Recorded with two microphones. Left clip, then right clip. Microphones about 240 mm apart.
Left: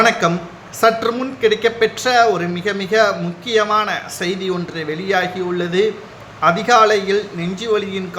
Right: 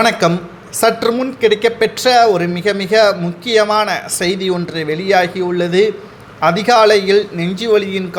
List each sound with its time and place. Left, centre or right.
0.0 s speech: right